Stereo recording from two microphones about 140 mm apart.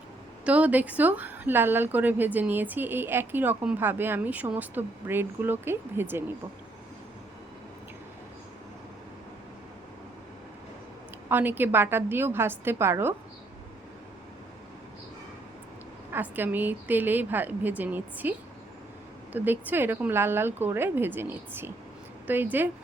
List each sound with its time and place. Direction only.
0.4 s a woman's voice: 10° right (ahead or behind)
11.3 s a woman's voice: 15° right (ahead or behind)
16.1 s a woman's voice: 15° right (ahead or behind)